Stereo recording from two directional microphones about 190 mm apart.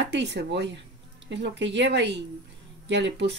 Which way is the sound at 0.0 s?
65° right (ahead or behind).